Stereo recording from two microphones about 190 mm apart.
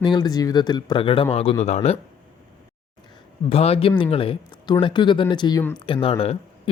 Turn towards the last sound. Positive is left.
turn(degrees=30)  # may be behind; listen again after turning